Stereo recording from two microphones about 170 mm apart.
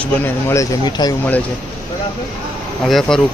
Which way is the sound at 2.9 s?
Centre (ahead or behind).